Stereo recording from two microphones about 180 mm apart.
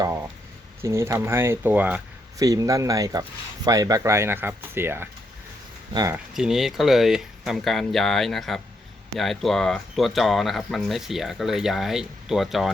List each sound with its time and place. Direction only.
0.0 s a sound: 15° right (ahead or behind)
0.8 s speech: 15° right (ahead or behind)
2.4 s speech: 20° right (ahead or behind)
6.3 s speech: centre (ahead or behind)